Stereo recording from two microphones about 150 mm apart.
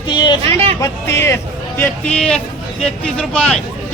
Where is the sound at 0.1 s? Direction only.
30° left (ahead or behind).